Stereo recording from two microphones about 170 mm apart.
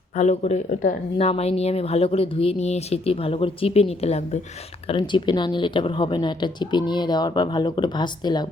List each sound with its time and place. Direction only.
0.2 s speech: 40° left (ahead or behind)
4.9 s speech: 25° left (ahead or behind)